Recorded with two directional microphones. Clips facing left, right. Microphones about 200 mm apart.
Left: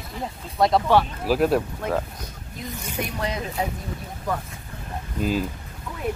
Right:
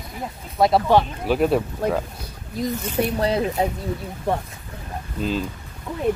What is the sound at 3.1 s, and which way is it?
Speech, 35° right (ahead or behind).